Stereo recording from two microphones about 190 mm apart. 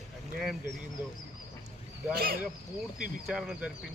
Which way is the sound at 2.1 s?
50° right (ahead or behind).